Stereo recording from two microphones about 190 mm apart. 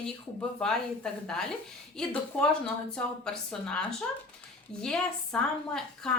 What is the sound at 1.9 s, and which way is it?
A woman's voice, 5° left (ahead or behind).